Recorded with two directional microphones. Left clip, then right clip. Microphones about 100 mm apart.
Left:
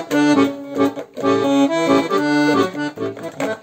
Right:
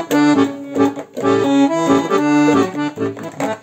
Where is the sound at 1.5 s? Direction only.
25° left (ahead or behind).